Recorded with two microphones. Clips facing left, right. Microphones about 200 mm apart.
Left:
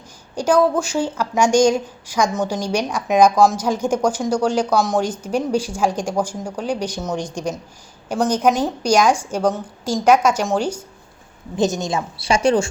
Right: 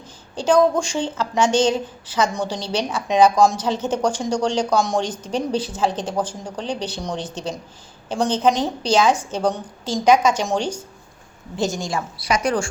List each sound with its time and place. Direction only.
0.3 s a woman's voice: 10° left (ahead or behind)
11.5 s a woman's voice: 20° left (ahead or behind)